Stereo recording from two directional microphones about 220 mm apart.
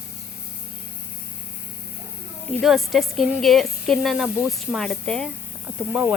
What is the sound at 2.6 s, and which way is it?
Speech, centre (ahead or behind).